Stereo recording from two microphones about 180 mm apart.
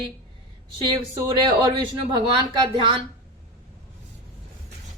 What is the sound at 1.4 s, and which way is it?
A woman's voice, 25° right (ahead or behind).